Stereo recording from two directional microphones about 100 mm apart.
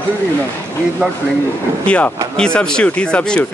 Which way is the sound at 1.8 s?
15° left (ahead or behind).